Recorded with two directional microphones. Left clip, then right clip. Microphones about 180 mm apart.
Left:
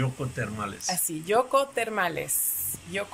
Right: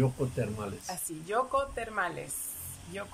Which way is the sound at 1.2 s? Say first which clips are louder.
Left 6 dB; 15° left (ahead or behind).